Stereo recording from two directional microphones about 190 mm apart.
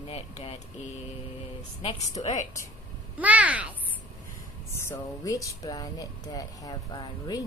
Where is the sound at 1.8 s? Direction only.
35° left (ahead or behind).